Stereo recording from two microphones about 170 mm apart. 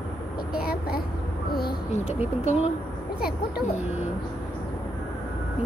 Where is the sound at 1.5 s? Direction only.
65° left (ahead or behind).